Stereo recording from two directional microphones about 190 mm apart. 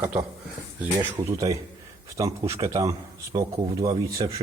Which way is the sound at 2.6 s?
15° right (ahead or behind).